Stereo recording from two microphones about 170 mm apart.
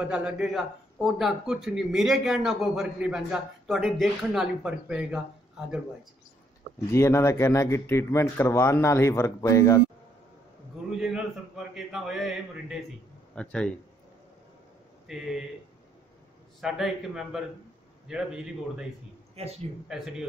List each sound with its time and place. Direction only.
0.1 s a man's voice: 5° right (ahead or behind)
6.9 s speech: 15° left (ahead or behind)
11.0 s a man's voice: centre (ahead or behind)
15.0 s a man's voice: centre (ahead or behind)
16.6 s a man's voice: 5° right (ahead or behind)
19.3 s speech: 35° right (ahead or behind)
19.9 s a man's voice: 5° right (ahead or behind)